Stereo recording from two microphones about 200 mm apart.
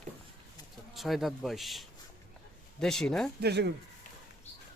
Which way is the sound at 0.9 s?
Centre (ahead or behind).